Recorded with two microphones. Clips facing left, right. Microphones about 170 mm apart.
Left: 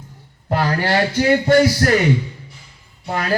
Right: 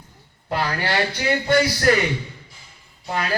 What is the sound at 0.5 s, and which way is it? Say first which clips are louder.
Speech: left 5 dB; 45° left (ahead or behind).